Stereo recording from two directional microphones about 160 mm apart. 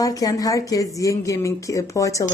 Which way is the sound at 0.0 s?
20° left (ahead or behind).